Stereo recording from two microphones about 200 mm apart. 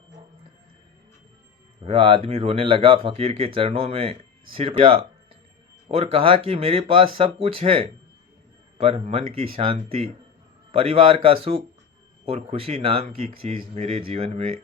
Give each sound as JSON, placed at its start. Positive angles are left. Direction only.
{"t": 1.8, "sound": "speech", "side_deg": -25}